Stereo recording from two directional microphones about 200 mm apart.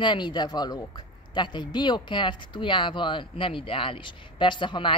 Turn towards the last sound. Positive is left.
turn(degrees=25)  # may be behind; listen again after turning